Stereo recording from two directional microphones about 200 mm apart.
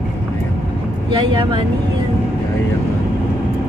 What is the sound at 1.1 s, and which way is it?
Speech, 25° right (ahead or behind).